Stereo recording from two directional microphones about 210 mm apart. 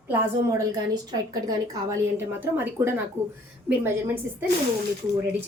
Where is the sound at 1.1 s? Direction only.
20° right (ahead or behind).